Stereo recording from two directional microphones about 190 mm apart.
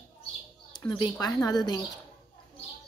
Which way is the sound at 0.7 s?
20° left (ahead or behind).